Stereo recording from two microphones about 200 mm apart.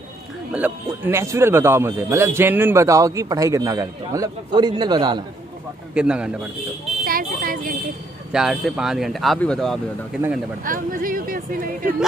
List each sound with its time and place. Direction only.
0.5 s a man's voice: 10° right (ahead or behind)
5.9 s speech: 5° right (ahead or behind)
7.1 s speech: 45° right (ahead or behind)
8.3 s speech: 5° right (ahead or behind)
10.6 s speech: 45° right (ahead or behind)